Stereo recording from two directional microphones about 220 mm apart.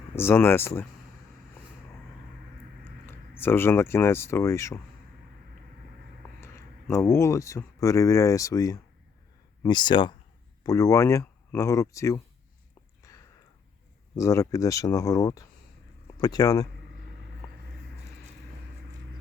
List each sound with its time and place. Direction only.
0.2 s speech: 10° left (ahead or behind)
3.1 s speech: 10° left (ahead or behind)
6.4 s speech: 10° left (ahead or behind)
13.0 s a sound: 15° left (ahead or behind)
14.2 s speech: 15° left (ahead or behind)